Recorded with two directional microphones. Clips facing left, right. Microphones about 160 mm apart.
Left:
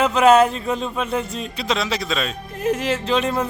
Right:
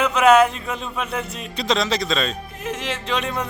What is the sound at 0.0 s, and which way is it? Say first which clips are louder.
Speech: left 1 dB; 35° left (ahead or behind).